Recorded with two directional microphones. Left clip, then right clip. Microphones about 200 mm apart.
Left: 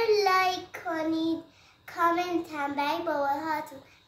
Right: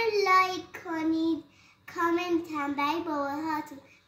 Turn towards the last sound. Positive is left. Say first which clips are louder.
# left 3 dB
turn(degrees=15)  # may be behind; listen again after turning